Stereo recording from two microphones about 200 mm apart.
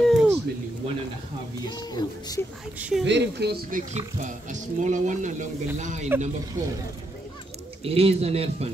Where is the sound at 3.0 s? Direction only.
60° right (ahead or behind); by 6.1 s 35° right (ahead or behind).